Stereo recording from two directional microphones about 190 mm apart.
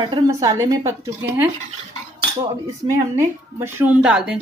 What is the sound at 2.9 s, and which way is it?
A woman's voice, 15° right (ahead or behind).